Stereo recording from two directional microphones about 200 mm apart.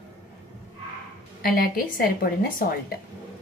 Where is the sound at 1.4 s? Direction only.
45° left (ahead or behind).